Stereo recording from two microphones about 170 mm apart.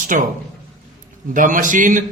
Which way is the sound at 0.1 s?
55° right (ahead or behind).